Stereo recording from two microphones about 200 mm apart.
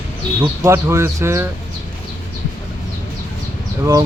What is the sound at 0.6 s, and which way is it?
Speech, 15° right (ahead or behind).